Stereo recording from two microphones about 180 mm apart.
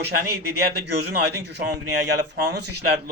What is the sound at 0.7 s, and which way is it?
A man's voice, 65° right (ahead or behind).